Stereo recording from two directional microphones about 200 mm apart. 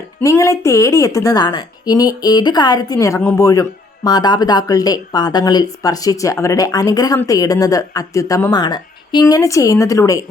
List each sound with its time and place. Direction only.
0.2 s a woman's voice: 15° left (ahead or behind)